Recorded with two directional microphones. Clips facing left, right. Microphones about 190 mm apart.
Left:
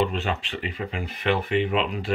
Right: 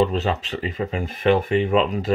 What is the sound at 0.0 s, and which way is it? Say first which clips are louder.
Speech: right 5 dB; 40° right (ahead or behind).